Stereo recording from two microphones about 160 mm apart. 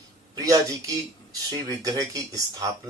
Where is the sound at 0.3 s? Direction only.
20° right (ahead or behind).